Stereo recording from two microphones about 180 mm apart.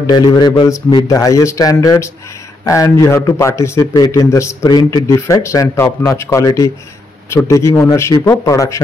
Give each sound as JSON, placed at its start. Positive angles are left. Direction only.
{"t": 0.0, "sound": "a man's voice", "side_deg": 20}